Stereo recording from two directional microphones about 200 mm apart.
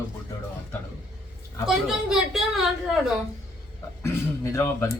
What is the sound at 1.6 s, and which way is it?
Speech, 5° right (ahead or behind).